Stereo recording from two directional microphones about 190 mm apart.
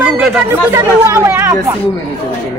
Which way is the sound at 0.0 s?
10° right (ahead or behind).